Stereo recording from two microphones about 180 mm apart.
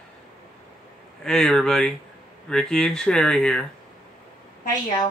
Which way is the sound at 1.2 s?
5° left (ahead or behind).